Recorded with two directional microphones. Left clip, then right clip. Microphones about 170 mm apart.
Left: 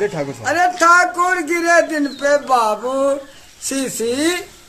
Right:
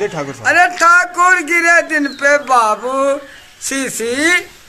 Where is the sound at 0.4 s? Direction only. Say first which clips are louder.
Right 4 dB; 20° left (ahead or behind).